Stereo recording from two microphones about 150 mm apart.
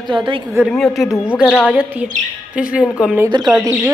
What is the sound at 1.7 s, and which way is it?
A woman's voice, 10° right (ahead or behind).